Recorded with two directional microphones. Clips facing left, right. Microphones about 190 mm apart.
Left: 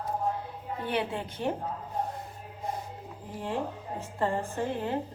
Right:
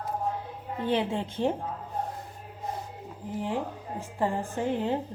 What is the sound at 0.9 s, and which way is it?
Speech, 25° right (ahead or behind).